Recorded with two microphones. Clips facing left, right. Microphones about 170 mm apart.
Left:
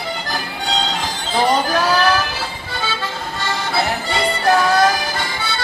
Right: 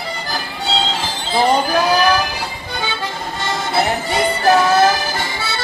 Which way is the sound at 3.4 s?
20° right (ahead or behind).